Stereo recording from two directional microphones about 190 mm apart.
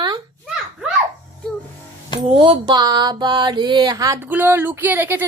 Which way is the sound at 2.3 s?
30° right (ahead or behind).